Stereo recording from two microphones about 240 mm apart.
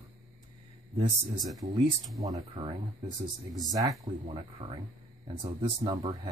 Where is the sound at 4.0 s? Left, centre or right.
Right.